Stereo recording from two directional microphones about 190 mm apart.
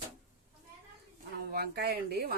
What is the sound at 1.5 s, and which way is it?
Speech, 55° right (ahead or behind).